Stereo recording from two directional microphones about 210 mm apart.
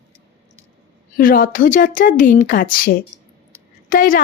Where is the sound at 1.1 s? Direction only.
40° left (ahead or behind).